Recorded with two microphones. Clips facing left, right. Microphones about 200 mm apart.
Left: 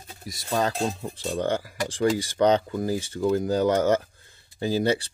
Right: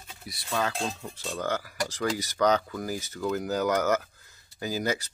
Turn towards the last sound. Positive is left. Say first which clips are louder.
# left 6 dB
turn(degrees=30)  # may be behind; listen again after turning